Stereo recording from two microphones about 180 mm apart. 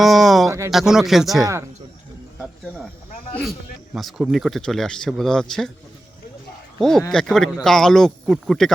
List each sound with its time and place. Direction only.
0.0 s a sound: centre (ahead or behind)
0.7 s speech: centre (ahead or behind)
1.4 s speech: 20° right (ahead or behind)
3.9 s speech: centre (ahead or behind)
6.7 s speech: 5° left (ahead or behind)